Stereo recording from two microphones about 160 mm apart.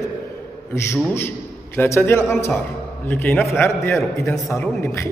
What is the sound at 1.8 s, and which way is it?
A man's voice, 15° left (ahead or behind).